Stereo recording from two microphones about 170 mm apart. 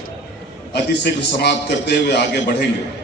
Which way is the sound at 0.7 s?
85° left.